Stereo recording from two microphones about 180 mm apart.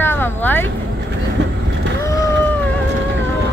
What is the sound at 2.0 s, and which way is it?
Boat, 15° left (ahead or behind).